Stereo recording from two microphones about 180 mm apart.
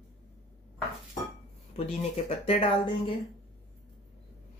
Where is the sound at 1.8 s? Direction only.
35° left (ahead or behind).